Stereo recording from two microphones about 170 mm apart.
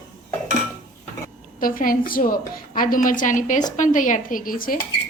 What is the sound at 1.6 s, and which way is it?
A woman's voice, 55° left (ahead or behind).